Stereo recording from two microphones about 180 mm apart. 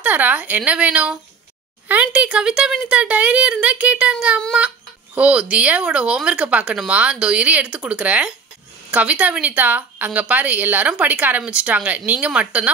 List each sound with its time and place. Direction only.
0.0 s speech: 10° right (ahead or behind)